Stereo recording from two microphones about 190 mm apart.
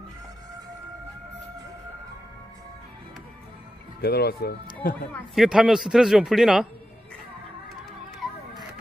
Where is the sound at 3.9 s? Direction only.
55° left (ahead or behind).